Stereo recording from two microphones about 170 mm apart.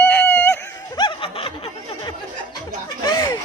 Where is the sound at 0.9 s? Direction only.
30° left (ahead or behind).